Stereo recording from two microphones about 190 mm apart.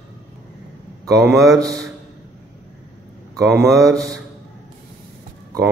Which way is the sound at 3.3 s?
Centre (ahead or behind).